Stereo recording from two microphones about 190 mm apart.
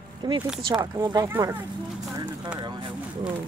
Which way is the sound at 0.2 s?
25° right (ahead or behind).